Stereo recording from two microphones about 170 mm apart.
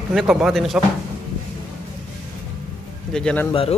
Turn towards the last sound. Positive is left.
turn(degrees=35)  # may be behind; listen again after turning